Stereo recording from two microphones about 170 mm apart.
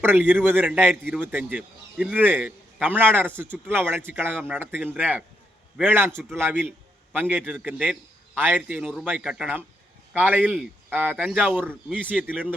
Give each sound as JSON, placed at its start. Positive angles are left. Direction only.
{"t": 0.0, "sound": "a man's voice", "side_deg": -10}